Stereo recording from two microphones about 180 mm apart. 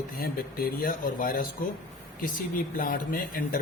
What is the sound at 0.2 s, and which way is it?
A man's voice, 55° left (ahead or behind).